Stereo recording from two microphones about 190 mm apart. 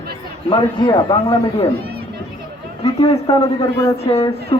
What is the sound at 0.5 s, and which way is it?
A man's voice, 25° left (ahead or behind).